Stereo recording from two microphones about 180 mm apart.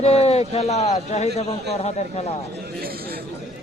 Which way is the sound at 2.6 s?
60° right (ahead or behind).